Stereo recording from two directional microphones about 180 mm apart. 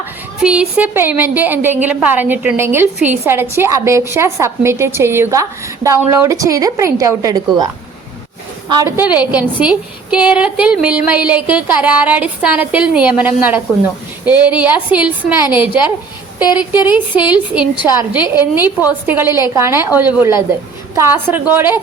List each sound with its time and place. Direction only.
0.4 s a woman's voice: 5° right (ahead or behind)
9.1 s a woman's voice: 10° right (ahead or behind)
16.4 s speech: 25° left (ahead or behind)
17.3 s a woman's voice: 5° right (ahead or behind)